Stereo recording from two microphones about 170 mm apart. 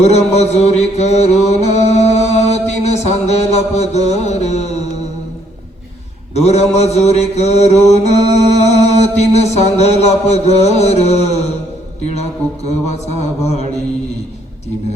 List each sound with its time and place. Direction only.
0.0 s mantra: 40° left (ahead or behind)
6.3 s mantra: 40° left (ahead or behind)